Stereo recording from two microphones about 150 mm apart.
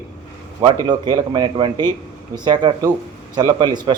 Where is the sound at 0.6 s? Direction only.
30° right (ahead or behind).